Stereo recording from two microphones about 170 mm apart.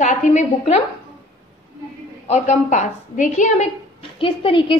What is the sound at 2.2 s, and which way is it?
A woman's voice, 40° left (ahead or behind).